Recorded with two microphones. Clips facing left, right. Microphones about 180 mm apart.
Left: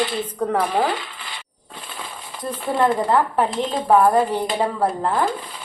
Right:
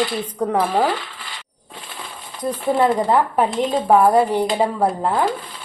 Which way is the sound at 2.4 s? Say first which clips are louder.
Right 2 dB; 15° right (ahead or behind).